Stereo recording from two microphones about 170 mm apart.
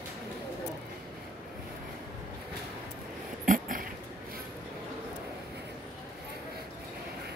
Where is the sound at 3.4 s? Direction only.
55° right (ahead or behind).